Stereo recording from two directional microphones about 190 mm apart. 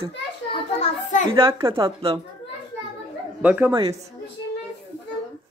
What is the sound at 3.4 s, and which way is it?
Speech, 10° right (ahead or behind).